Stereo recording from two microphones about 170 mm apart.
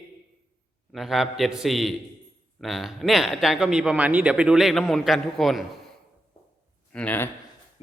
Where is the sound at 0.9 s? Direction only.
Centre (ahead or behind).